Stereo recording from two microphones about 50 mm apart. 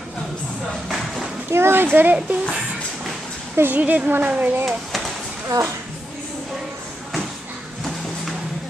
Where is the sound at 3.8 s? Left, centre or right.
Right.